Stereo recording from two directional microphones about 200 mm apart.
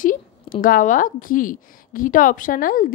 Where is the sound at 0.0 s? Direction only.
45° left (ahead or behind).